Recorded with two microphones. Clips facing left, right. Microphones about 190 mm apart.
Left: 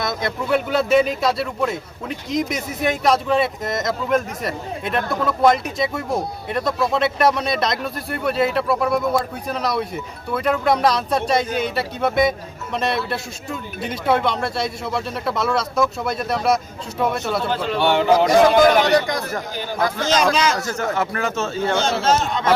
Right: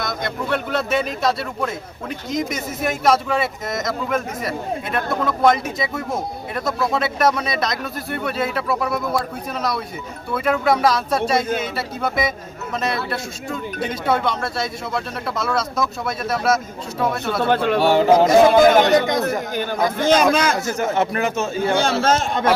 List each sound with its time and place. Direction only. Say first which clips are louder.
0.0 s speech: left 1 dB; centre (ahead or behind)
17.4 s speech: right 5 dB; 60° right (ahead or behind)
17.7 s speech: even; 40° right (ahead or behind)
18.3 s a man's voice: even; 25° right (ahead or behind)
20.0 s speech: right 3 dB; 55° right (ahead or behind)
20.6 s speech: right 2 dB; 20° right (ahead or behind)
21.8 s speech: even; 55° right (ahead or behind)